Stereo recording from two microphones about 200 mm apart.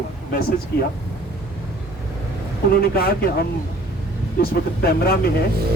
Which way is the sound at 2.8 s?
50° left (ahead or behind).